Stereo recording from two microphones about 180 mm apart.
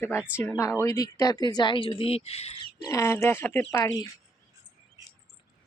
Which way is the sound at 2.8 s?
15° left (ahead or behind).